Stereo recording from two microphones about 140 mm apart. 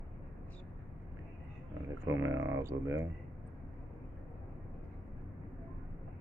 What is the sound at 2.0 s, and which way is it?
Speech, 20° right (ahead or behind).